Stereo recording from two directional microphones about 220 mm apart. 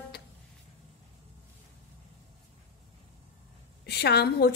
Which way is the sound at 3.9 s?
50° left (ahead or behind).